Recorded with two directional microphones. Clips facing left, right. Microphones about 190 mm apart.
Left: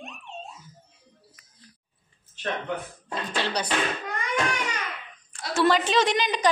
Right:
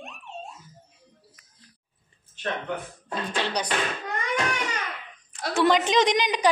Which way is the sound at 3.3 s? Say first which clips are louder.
Even; 15° right (ahead or behind).